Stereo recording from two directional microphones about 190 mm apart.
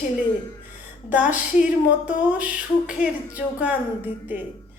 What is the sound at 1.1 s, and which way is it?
Speech, 5° right (ahead or behind).